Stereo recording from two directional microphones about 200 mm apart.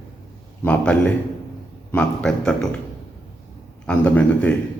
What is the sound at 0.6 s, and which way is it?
A man's voice, 5° left (ahead or behind).